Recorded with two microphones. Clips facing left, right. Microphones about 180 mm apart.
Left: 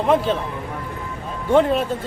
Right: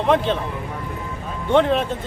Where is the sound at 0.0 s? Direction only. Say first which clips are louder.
Even; 5° left (ahead or behind).